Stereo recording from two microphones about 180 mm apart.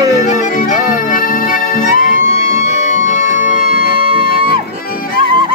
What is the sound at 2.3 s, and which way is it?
Music, 50° right (ahead or behind).